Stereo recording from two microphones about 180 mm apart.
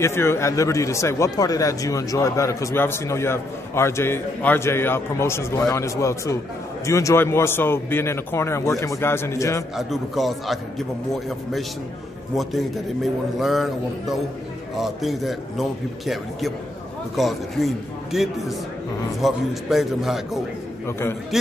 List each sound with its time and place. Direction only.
0.0 s speech: 15° left (ahead or behind)
9.8 s a man's voice: centre (ahead or behind)
20.8 s speech: 15° left (ahead or behind)